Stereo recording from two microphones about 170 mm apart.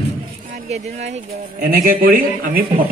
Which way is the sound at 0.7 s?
45° right (ahead or behind).